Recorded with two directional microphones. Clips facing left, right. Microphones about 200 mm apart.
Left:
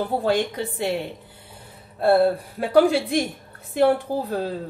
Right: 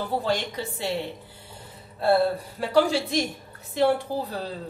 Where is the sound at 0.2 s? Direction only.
55° left (ahead or behind).